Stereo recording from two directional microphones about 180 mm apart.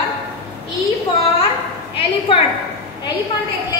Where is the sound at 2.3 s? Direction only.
30° left (ahead or behind).